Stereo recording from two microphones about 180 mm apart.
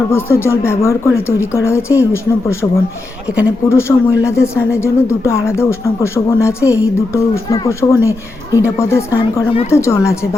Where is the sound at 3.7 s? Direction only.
15° left (ahead or behind).